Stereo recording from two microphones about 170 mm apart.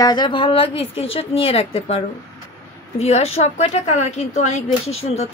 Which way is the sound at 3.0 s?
40° left (ahead or behind).